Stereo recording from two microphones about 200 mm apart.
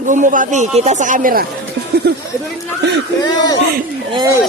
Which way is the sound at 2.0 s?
55° right (ahead or behind).